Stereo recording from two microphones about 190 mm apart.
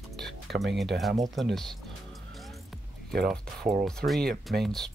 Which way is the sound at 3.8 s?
Centre (ahead or behind).